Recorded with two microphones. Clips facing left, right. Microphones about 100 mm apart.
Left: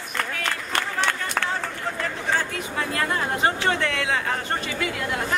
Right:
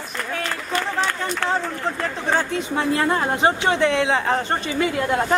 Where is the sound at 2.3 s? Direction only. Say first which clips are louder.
Right 6 dB; 25° right (ahead or behind).